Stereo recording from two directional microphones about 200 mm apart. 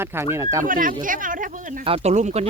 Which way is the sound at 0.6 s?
45° right (ahead or behind).